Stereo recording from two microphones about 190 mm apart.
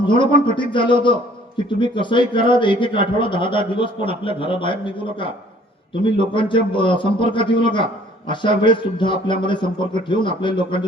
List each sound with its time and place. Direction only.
0.0 s a man's voice: 25° left (ahead or behind)
5.9 s a man's voice: 25° left (ahead or behind)